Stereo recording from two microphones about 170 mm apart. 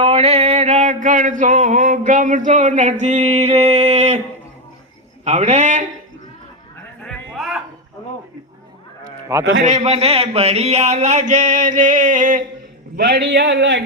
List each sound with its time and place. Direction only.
0.0 s mantra: 35° right (ahead or behind)
5.2 s mantra: 40° right (ahead or behind)
7.0 s a sound: centre (ahead or behind)
9.3 s a man's voice: 15° right (ahead or behind)
9.6 s mantra: 45° right (ahead or behind)
13.1 s a man's voice: 85° right